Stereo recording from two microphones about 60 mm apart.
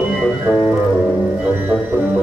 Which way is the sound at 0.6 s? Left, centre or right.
Centre.